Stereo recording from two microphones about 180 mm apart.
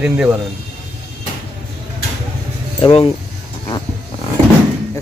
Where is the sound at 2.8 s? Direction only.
30° left (ahead or behind).